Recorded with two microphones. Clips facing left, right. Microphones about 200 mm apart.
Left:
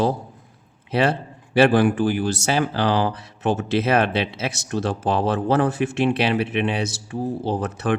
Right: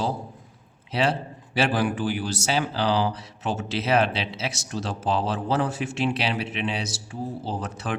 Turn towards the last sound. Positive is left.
turn(degrees=55)  # may be behind; listen again after turning